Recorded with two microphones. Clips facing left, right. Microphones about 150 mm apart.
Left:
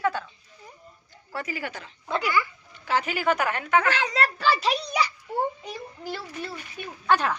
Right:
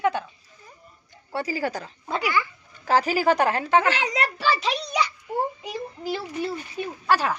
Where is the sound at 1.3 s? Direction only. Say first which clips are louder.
Right 6 dB; 35° right (ahead or behind).